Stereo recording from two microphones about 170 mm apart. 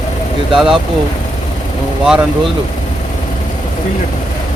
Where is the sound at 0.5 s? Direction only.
5° right (ahead or behind).